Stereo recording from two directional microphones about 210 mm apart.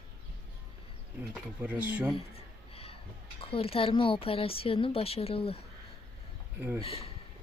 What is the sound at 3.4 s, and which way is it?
Speech, 25° left (ahead or behind).